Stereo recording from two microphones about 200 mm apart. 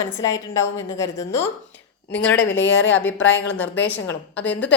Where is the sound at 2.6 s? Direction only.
65° left (ahead or behind).